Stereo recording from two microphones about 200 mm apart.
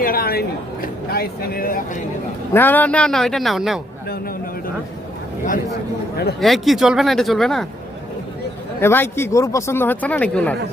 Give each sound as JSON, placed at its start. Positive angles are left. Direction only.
{"t": 0.0, "sound": "speech", "side_deg": 50}
{"t": 2.5, "sound": "speech", "side_deg": 10}
{"t": 6.4, "sound": "speech", "side_deg": 0}
{"t": 8.8, "sound": "speech", "side_deg": 10}